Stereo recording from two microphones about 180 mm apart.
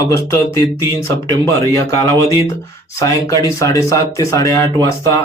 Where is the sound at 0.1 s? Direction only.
15° left (ahead or behind).